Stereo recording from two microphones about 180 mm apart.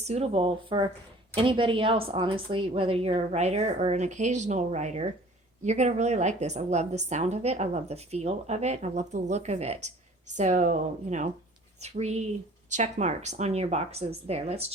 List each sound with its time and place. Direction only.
0.0 s a woman's voice: 35° right (ahead or behind)